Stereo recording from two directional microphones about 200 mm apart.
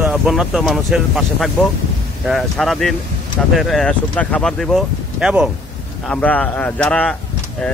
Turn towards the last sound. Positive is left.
turn(degrees=5)  # may be behind; listen again after turning